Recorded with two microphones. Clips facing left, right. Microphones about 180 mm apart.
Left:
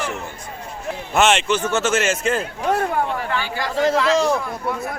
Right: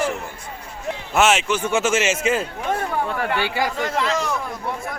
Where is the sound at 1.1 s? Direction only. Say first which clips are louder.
Left 1 dB; 5° right (ahead or behind).